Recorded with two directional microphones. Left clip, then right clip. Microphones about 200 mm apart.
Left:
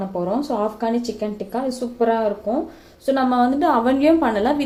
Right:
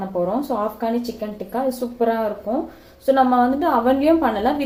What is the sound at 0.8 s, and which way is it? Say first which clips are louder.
A woman's voice: left 1 dB; 20° left (ahead or behind).